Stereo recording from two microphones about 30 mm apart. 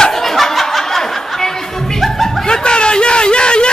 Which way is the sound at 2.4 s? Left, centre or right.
Left.